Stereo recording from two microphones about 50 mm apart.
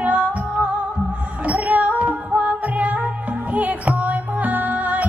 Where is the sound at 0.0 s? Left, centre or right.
Right.